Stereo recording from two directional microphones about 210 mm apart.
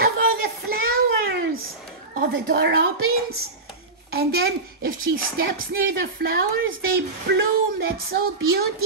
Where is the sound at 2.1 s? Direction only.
45° right (ahead or behind).